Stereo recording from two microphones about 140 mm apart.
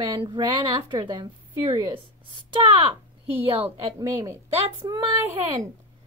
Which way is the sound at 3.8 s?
25° right (ahead or behind).